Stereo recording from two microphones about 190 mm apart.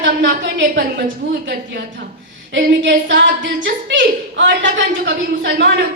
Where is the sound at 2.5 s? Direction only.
70° right (ahead or behind).